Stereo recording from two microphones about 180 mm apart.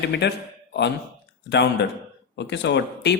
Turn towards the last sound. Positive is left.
turn(degrees=75)  # may be behind; listen again after turning